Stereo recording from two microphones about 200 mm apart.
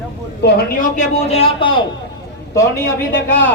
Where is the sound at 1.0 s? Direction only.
30° left (ahead or behind).